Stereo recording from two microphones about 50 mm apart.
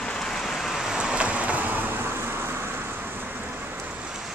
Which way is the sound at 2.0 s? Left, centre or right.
Right.